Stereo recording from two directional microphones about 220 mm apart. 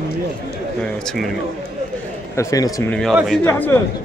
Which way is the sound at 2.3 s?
15° left (ahead or behind).